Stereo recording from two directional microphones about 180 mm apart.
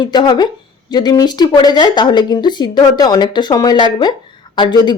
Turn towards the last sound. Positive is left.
turn(degrees=25)  # may be behind; listen again after turning